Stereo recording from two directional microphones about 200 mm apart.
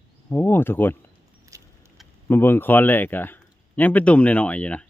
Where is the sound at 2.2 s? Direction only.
10° left (ahead or behind).